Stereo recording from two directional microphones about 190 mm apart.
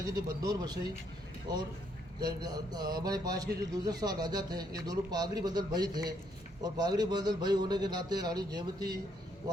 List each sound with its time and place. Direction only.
0.0 s speech: 20° right (ahead or behind)
2.2 s speech: 20° right (ahead or behind)